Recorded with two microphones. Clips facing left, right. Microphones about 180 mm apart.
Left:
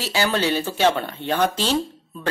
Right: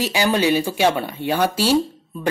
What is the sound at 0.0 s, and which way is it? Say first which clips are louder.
Speech: right 3 dB; 15° right (ahead or behind).